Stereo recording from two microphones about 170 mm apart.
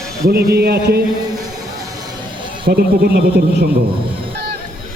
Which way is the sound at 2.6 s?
65° right (ahead or behind).